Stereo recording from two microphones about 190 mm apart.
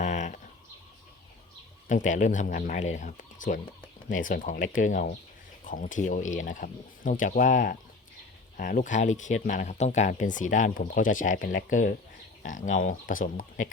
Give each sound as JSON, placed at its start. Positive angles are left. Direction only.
{"t": 0.0, "sound": "bird", "side_deg": 40}
{"t": 1.9, "sound": "speech", "side_deg": 40}